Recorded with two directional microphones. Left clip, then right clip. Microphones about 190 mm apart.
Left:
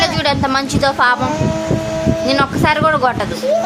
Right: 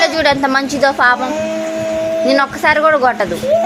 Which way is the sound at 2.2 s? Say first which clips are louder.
Right 2 dB; 15° right (ahead or behind).